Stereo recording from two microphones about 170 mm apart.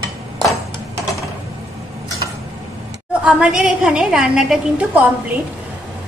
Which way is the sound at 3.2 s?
5° right (ahead or behind).